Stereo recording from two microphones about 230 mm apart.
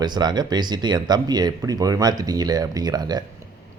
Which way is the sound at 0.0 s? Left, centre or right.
Centre.